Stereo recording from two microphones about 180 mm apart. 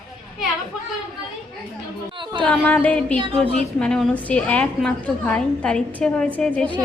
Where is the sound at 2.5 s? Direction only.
5° left (ahead or behind).